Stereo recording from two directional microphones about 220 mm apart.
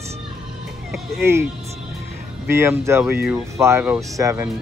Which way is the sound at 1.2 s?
10° right (ahead or behind).